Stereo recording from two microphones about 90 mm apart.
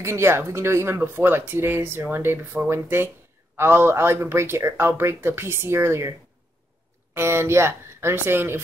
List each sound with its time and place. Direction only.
0.0 s speech: 30° right (ahead or behind)
7.2 s speech: 30° right (ahead or behind)